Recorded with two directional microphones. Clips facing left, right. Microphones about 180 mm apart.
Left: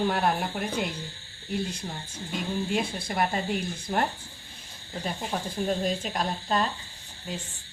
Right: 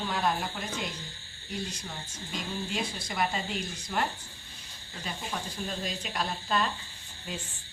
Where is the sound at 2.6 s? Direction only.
55° left (ahead or behind).